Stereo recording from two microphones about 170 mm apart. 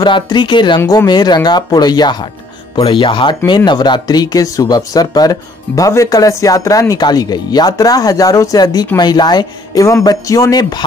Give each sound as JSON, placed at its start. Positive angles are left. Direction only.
{"t": 0.0, "sound": "speech", "side_deg": 25}